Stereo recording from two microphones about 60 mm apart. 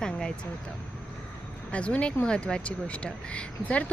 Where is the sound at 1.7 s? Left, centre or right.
Left.